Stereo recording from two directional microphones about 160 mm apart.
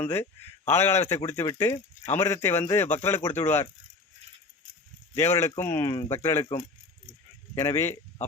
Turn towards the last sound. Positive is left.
turn(degrees=15)  # may be behind; listen again after turning